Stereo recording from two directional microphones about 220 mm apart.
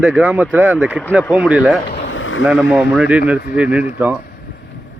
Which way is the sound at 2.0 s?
65° left (ahead or behind).